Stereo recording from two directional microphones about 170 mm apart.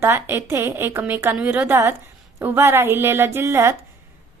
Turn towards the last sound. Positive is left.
turn(degrees=-15)  # may be behind; listen again after turning